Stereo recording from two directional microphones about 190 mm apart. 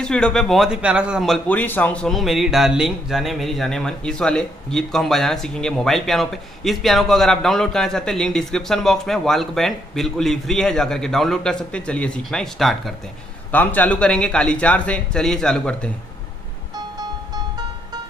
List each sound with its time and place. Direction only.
0.0 s speech: 5° left (ahead or behind)
16.7 s music: 20° right (ahead or behind)